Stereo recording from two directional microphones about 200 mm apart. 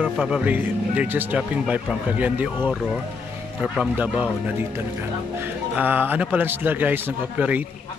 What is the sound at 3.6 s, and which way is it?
Speech, centre (ahead or behind).